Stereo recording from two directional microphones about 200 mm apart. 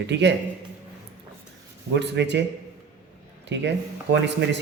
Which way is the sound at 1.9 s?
60° right (ahead or behind).